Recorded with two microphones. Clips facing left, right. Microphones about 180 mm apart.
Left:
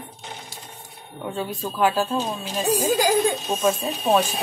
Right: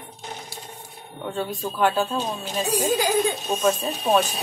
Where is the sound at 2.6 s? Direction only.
45° left (ahead or behind).